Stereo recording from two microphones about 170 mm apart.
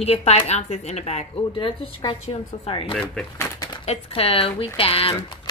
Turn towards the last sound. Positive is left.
turn(degrees=35)  # may be behind; listen again after turning